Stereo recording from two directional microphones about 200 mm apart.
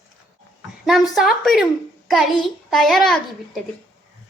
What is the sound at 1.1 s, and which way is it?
A child's voice, centre (ahead or behind).